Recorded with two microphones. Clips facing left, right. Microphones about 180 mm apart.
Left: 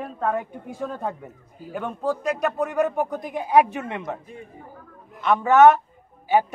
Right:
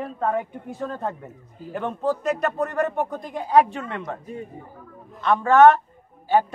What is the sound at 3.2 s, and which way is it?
Speech, 15° left (ahead or behind).